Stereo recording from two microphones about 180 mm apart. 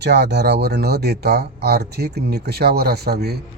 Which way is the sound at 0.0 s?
65° right (ahead or behind).